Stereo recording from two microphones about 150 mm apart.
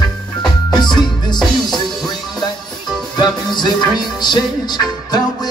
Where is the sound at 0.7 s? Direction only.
30° left (ahead or behind).